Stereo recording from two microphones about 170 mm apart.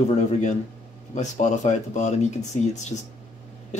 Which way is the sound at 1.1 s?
45° left (ahead or behind).